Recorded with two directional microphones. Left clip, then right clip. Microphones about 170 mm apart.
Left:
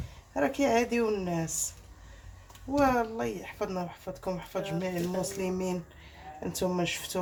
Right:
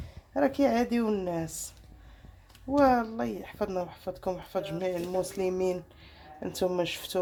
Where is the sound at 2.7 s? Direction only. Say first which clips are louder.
Right 2 dB; 45° right (ahead or behind).